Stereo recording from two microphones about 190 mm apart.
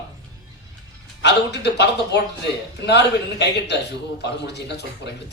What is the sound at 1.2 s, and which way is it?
A man's voice, 65° left (ahead or behind).